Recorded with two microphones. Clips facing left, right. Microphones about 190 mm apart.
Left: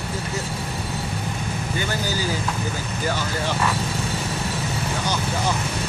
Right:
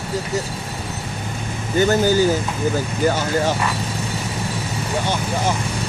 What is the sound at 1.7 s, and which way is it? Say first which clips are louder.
Vehicle: right 13 dB; 45° right (ahead or behind).